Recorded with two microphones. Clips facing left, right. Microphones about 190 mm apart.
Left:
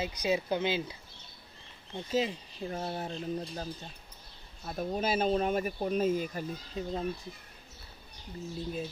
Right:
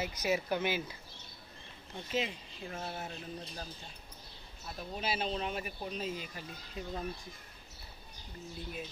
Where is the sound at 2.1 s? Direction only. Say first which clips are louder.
Left 5 dB; 30° left (ahead or behind).